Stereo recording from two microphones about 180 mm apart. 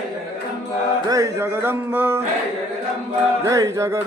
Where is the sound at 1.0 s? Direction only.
20° right (ahead or behind).